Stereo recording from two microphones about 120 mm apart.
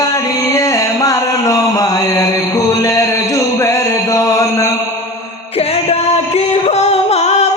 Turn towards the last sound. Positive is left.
turn(degrees=65)  # may be behind; listen again after turning